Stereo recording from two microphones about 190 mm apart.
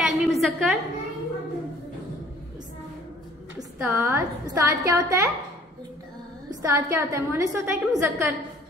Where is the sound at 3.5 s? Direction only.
15° right (ahead or behind).